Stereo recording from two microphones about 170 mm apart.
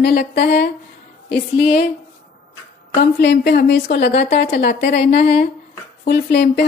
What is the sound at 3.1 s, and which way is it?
A woman's voice, 90° left.